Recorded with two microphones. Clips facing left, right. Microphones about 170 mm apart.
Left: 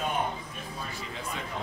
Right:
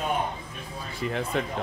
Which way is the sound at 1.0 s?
65° right (ahead or behind).